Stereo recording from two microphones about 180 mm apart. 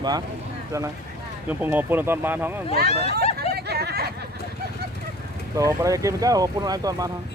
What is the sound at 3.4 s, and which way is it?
Hubbub, 60° right (ahead or behind).